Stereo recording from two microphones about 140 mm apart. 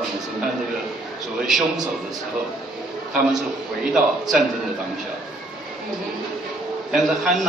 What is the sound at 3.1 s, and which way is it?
A man's voice, 5° right (ahead or behind).